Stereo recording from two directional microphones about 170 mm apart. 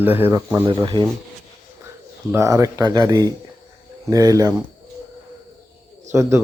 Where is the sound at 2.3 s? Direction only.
20° right (ahead or behind).